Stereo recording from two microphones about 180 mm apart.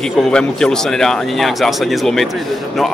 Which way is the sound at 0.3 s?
5° left (ahead or behind).